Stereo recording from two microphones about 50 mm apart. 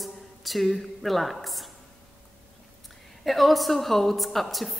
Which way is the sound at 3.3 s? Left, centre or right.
Centre.